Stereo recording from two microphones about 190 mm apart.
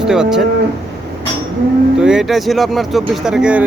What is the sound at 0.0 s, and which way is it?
Speech, 5° right (ahead or behind).